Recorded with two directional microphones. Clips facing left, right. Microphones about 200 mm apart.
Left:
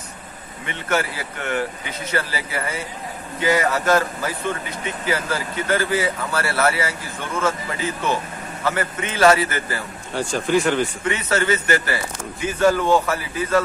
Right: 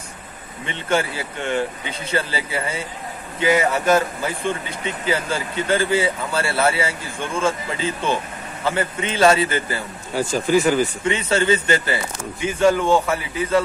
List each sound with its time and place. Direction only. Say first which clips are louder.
0.7 s speech: right 2 dB; 25° right (ahead or behind)
10.1 s speech: right 2 dB; centre (ahead or behind)
11.1 s speech: right 2 dB; 30° right (ahead or behind)
12.4 s speech: right 1 dB; 10° right (ahead or behind)